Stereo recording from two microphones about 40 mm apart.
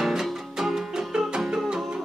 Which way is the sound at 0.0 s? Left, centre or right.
Centre.